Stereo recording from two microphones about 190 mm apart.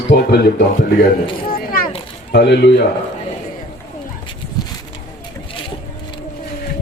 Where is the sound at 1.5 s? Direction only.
50° left (ahead or behind).